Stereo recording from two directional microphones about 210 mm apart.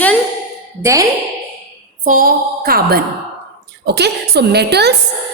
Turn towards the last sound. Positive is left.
turn(degrees=-50)  # may be behind; listen again after turning